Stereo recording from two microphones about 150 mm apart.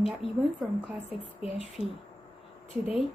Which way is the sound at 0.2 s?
40° left (ahead or behind).